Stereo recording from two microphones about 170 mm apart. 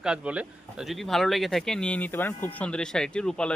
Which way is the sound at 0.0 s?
5° right (ahead or behind).